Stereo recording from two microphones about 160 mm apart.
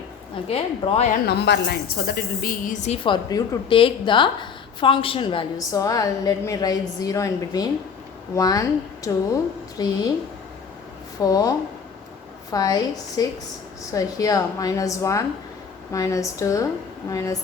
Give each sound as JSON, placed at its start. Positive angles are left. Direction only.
{"t": 0.4, "sound": "a woman's voice", "side_deg": 40}
{"t": 1.1, "sound": "a woman's voice", "side_deg": 90}
{"t": 5.5, "sound": "a woman's voice", "side_deg": 20}
{"t": 11.2, "sound": "a woman's voice", "side_deg": 20}